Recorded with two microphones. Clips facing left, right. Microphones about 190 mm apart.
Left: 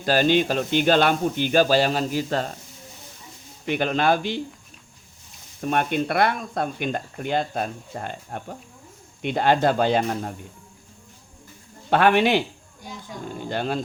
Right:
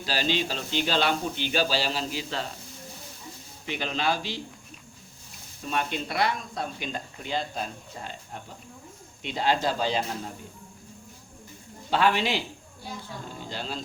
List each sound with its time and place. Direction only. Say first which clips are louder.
0.0 s speech: left 9 dB; 50° left (ahead or behind)
3.7 s speech: left 7 dB; 55° left (ahead or behind)
5.5 s speech: left 7 dB; 55° left (ahead or behind)
11.9 s speech: left 6 dB; 60° left (ahead or behind)
13.4 s speech: left 10 dB; 60° left (ahead or behind)